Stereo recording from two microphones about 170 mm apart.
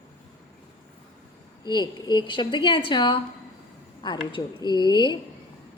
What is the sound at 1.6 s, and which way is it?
A woman's voice, 25° left (ahead or behind).